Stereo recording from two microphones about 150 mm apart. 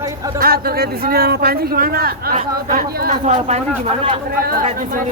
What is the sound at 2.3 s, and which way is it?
A man's voice, 60° right (ahead or behind).